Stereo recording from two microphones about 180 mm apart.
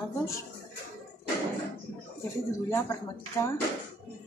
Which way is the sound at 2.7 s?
15° left (ahead or behind).